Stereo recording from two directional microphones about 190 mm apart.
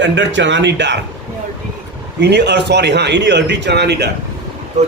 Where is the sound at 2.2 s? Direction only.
60° right (ahead or behind).